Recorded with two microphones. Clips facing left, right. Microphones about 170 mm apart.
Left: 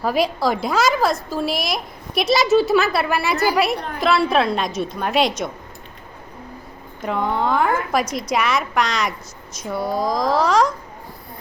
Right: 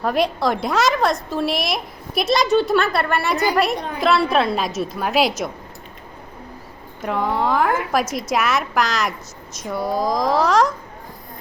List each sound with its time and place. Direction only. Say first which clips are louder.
0.0 s a woman's voice: even; centre (ahead or behind)
7.0 s a woman's voice: even; centre (ahead or behind)